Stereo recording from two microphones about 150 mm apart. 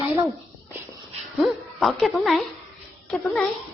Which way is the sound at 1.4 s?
5° left (ahead or behind).